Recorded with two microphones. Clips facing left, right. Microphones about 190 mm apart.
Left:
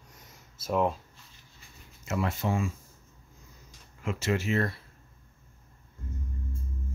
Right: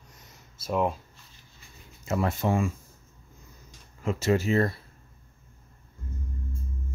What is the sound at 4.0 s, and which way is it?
Speech, 35° right (ahead or behind).